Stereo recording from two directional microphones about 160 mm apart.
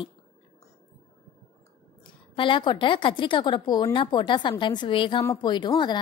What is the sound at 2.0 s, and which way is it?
A woman's voice, 30° left (ahead or behind).